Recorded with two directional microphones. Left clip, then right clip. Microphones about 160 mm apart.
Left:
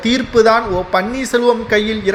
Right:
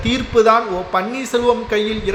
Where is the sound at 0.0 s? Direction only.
30° left (ahead or behind).